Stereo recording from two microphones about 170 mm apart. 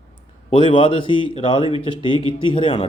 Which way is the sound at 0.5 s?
30° left (ahead or behind).